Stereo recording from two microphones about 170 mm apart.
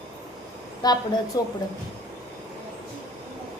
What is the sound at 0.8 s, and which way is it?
Speech, 25° left (ahead or behind).